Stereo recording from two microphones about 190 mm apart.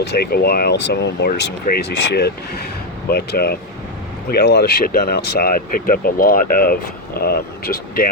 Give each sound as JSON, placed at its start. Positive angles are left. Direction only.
{"t": 0.0, "sound": "speech", "side_deg": 55}